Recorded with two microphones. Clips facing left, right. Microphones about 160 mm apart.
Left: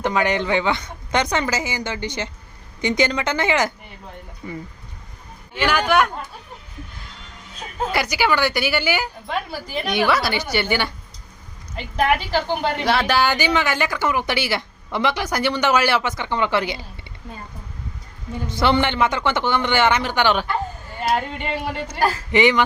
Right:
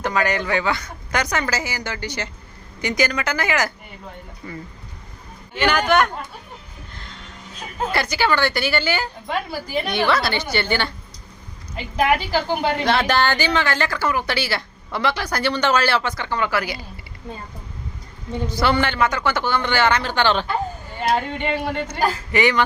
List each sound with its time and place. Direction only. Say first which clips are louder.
0.0 s speech: left 1 dB; 20° left (ahead or behind)
5.5 s a woman's voice: right 1 dB; 5° left (ahead or behind)
7.9 s speech: even; 15° left (ahead or behind)
9.2 s a woman's voice: right 1 dB; centre (ahead or behind)
9.8 s speech: left 2 dB; 10° left (ahead or behind)
11.7 s a woman's voice: right 1 dB; centre (ahead or behind); by 16.8 s 25° left (ahead or behind)
18.4 s a woman's voice: left 1 dB; 20° left (ahead or behind); by 21.8 s 5° left (ahead or behind)
22.3 s speech: left 3 dB; 20° left (ahead or behind)